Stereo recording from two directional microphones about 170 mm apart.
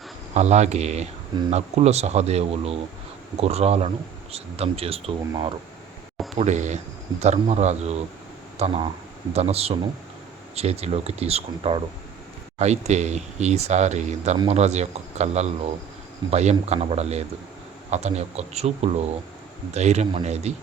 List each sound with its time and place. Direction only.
0.3 s speech: 40° right (ahead or behind)
6.3 s speech: 40° right (ahead or behind)